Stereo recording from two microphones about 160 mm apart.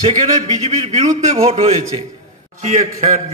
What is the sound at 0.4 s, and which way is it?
A man's voice, 40° right (ahead or behind).